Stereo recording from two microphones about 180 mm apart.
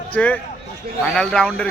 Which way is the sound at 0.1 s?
10° left (ahead or behind).